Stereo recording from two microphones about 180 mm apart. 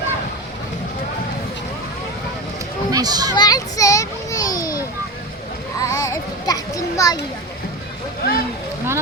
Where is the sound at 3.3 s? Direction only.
20° left (ahead or behind).